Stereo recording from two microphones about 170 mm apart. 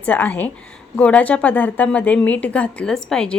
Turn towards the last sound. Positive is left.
turn(degrees=5)  # may be behind; listen again after turning